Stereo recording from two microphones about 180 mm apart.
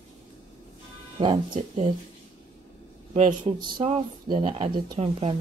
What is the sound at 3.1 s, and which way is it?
Speech, 40° right (ahead or behind).